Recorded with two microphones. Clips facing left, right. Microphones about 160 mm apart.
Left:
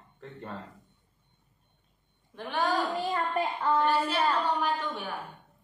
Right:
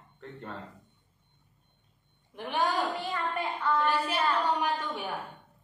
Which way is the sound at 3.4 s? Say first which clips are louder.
Left 6 dB; 40° left (ahead or behind).